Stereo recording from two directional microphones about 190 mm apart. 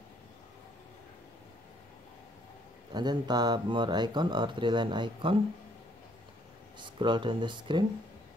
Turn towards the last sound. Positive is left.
turn(degrees=-25)  # may be behind; listen again after turning